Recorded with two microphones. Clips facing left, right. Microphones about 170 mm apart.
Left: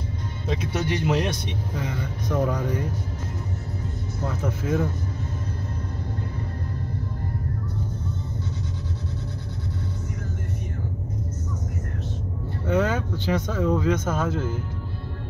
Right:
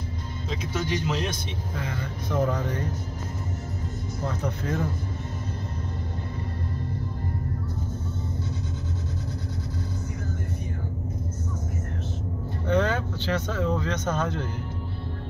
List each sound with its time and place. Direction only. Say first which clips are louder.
0.5 s speech: left 3 dB; 60° left (ahead or behind)
1.8 s speech: left 1 dB; 15° left (ahead or behind)
4.3 s speech: left 4 dB; 5° left (ahead or behind)
12.6 s speech: left 1 dB; 5° left (ahead or behind)